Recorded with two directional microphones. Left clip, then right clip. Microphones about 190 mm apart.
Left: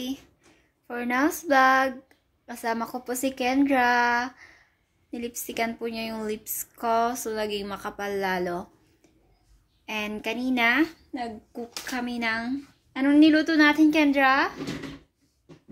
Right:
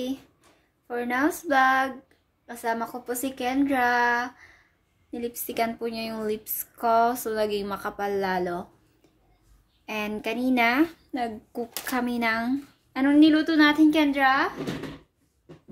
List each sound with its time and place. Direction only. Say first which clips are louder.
0.8 s speech: even; 20° left (ahead or behind)
5.1 s speech: right 2 dB; 5° left (ahead or behind)
9.8 s speech: even; 5° right (ahead or behind)
12.9 s a woman's voice: even; 5° left (ahead or behind); by 14.5 s 25° left (ahead or behind)